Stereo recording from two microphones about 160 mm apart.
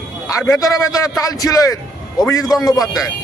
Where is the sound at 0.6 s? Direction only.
20° left (ahead or behind).